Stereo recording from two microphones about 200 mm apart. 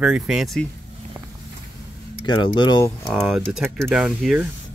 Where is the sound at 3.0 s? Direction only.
Centre (ahead or behind).